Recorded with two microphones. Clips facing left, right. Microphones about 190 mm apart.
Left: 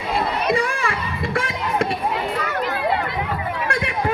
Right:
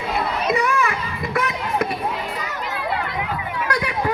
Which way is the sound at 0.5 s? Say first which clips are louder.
Right 1 dB; 30° left (ahead or behind).